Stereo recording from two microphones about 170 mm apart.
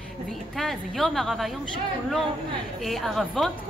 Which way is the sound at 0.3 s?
Centre (ahead or behind).